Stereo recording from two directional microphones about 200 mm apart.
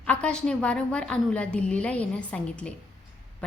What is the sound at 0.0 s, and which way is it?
A woman's voice, 5° left (ahead or behind).